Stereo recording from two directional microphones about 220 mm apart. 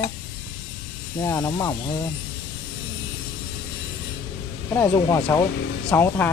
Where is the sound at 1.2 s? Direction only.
15° left (ahead or behind).